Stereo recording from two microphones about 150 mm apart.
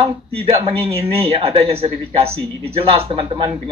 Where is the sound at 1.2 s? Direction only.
40° right (ahead or behind).